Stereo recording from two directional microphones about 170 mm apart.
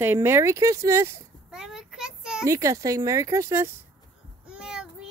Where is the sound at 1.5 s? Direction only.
5° right (ahead or behind).